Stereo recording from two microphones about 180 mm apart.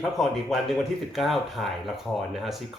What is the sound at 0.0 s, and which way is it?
Speech, centre (ahead or behind).